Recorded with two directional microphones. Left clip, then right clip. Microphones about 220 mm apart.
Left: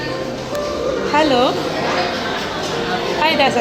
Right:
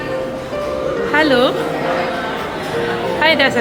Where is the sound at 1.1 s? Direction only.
20° right (ahead or behind).